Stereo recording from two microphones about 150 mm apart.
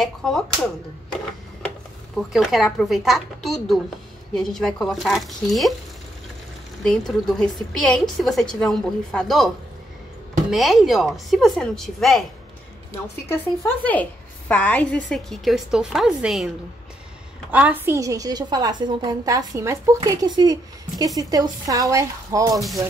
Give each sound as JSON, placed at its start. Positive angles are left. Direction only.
{"t": 0.0, "sound": "a woman's voice", "side_deg": 0}
{"t": 2.1, "sound": "a woman's voice", "side_deg": 0}
{"t": 6.8, "sound": "a woman's voice", "side_deg": 0}
{"t": 10.5, "sound": "a woman's voice", "side_deg": 0}
{"t": 13.3, "sound": "a woman's voice", "side_deg": 10}
{"t": 22.6, "sound": "a woman's voice", "side_deg": 0}